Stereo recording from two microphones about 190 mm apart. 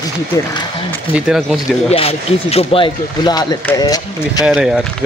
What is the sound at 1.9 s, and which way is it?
Speech, 30° left (ahead or behind).